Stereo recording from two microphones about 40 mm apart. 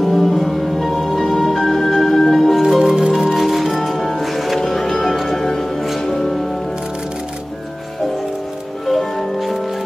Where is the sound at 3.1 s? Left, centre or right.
Centre.